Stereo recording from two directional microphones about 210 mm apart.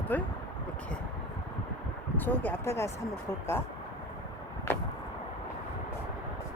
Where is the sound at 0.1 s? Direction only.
10° left (ahead or behind).